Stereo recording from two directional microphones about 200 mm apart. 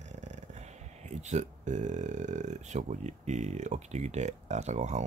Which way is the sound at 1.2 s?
35° right (ahead or behind).